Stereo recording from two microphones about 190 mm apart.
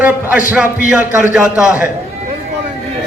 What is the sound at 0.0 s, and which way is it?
A man's voice, 10° right (ahead or behind).